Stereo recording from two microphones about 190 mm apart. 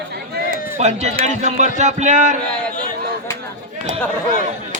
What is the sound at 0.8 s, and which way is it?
A man's voice, 35° right (ahead or behind).